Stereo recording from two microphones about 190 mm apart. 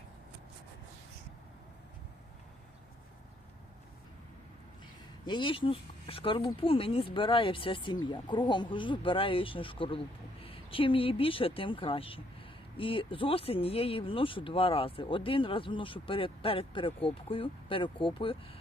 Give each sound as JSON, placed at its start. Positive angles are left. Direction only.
{"t": 5.2, "sound": "speech", "side_deg": 25}